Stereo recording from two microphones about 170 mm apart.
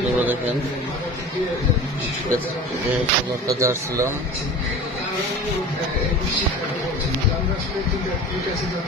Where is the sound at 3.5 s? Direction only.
20° right (ahead or behind).